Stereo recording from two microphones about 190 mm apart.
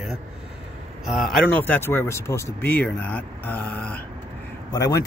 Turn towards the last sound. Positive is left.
turn(degrees=15)  # may be behind; listen again after turning